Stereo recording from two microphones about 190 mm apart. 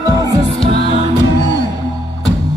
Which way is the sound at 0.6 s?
30° left (ahead or behind).